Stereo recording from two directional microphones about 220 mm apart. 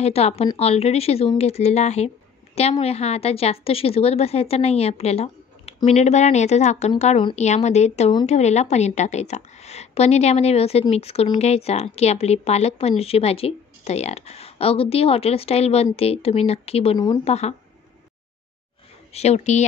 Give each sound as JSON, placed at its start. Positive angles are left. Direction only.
{"t": 0.0, "sound": "a woman's voice", "side_deg": 30}
{"t": 19.1, "sound": "speech", "side_deg": 30}